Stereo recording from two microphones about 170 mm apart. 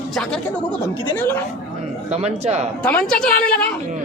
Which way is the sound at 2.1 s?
40° right (ahead or behind).